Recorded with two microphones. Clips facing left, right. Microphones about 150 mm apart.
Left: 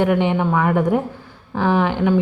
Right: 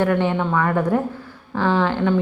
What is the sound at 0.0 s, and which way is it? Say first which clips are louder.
A woman's voice: left 2 dB; 15° left (ahead or behind).